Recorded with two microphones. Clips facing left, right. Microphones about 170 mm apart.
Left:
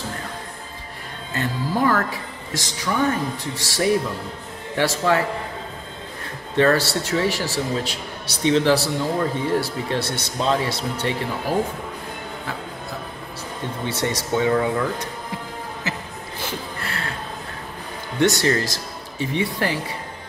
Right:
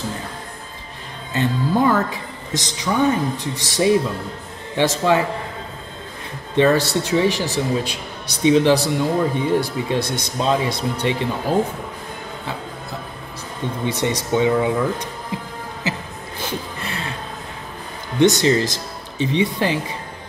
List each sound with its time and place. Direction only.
1.3 s speech: 20° right (ahead or behind)
6.5 s a man's voice: 20° right (ahead or behind)
13.8 s a man's voice: 15° right (ahead or behind)
16.8 s a sound: 20° right (ahead or behind)
18.2 s speech: 20° right (ahead or behind)